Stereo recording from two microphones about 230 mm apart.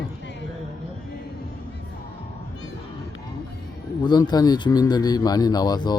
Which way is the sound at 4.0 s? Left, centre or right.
Centre.